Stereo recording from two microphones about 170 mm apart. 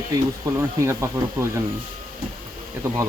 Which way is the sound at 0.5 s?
20° right (ahead or behind).